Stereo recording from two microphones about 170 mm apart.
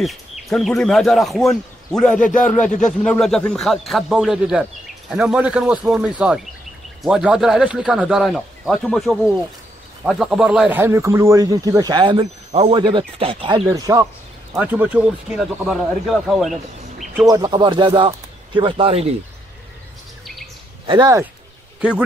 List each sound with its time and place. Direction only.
0.0 s speech: centre (ahead or behind)
2.6 s a man's voice: 45° left (ahead or behind)
3.0 s speech: 5° left (ahead or behind); by 13.6 s 30° right (ahead or behind)
13.7 s speech: 20° right (ahead or behind); by 16.5 s centre (ahead or behind)
17.3 s speech: 25° right (ahead or behind)
20.8 s speech: 25° right (ahead or behind)